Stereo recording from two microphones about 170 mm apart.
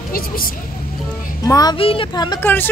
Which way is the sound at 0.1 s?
60° left (ahead or behind).